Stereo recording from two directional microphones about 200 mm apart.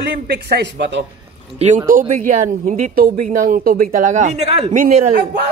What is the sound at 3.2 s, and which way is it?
Speech, 45° right (ahead or behind).